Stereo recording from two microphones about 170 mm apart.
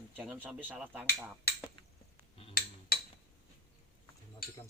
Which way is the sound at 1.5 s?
70° left (ahead or behind).